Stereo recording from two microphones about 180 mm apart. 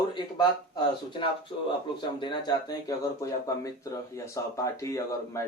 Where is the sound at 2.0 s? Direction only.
25° left (ahead or behind).